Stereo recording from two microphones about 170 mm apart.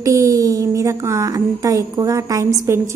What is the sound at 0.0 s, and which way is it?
A woman's voice, 20° right (ahead or behind).